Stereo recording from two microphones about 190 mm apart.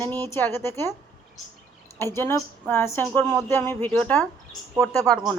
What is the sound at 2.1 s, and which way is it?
A woman's voice, 15° left (ahead or behind).